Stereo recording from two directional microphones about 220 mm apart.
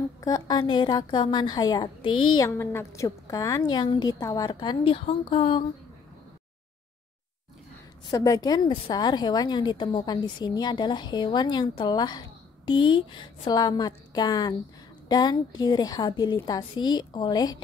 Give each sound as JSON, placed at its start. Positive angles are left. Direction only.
{"t": 0.2, "sound": "a woman's voice", "side_deg": 15}
{"t": 2.0, "sound": "speech", "side_deg": 75}
{"t": 2.3, "sound": "a woman's voice", "side_deg": 10}
{"t": 8.1, "sound": "a woman's voice", "side_deg": 15}